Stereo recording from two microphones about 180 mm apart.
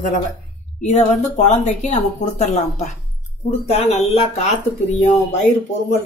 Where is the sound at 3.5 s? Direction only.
35° left (ahead or behind).